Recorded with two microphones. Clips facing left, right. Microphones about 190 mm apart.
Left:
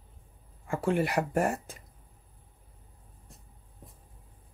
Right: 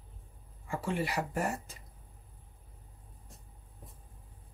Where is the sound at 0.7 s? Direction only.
55° left (ahead or behind).